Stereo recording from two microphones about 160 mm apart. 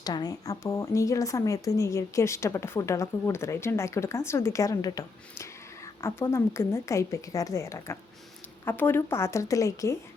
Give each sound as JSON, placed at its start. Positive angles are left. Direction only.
{"t": 0.0, "sound": "speech", "side_deg": 25}